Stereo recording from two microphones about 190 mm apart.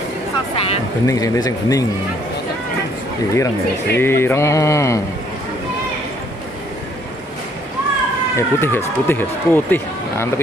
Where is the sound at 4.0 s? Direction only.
10° left (ahead or behind).